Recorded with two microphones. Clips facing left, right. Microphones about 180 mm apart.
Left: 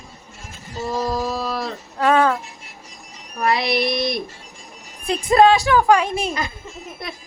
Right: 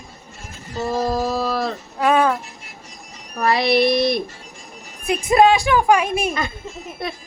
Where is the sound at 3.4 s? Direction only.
70° right (ahead or behind).